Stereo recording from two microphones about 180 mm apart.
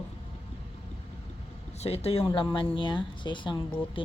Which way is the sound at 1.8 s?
35° left (ahead or behind).